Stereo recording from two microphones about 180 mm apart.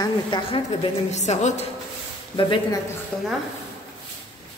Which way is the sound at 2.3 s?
25° left (ahead or behind).